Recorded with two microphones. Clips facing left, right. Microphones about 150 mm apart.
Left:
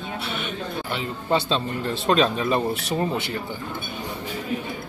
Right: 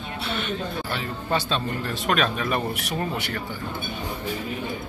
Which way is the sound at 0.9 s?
25° left (ahead or behind).